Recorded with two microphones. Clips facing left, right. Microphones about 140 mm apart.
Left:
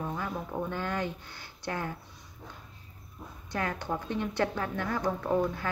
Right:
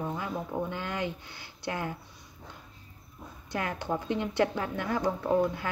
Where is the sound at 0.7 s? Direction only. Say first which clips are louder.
Left 2 dB; 45° left (ahead or behind).